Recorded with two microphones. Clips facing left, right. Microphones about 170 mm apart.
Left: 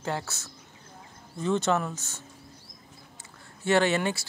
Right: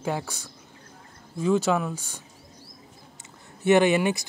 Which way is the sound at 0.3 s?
15° right (ahead or behind).